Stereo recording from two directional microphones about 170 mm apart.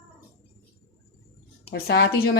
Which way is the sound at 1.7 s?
70° left (ahead or behind).